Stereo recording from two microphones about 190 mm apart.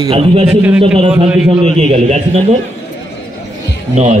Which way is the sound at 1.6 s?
30° right (ahead or behind).